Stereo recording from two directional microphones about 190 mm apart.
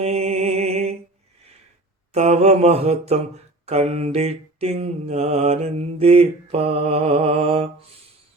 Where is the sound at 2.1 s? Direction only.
35° right (ahead or behind).